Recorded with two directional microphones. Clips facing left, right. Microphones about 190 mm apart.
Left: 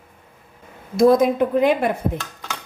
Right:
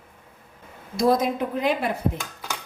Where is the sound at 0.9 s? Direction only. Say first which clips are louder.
Left 6 dB; 55° left (ahead or behind).